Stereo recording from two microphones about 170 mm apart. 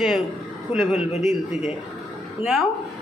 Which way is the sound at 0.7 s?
5° right (ahead or behind).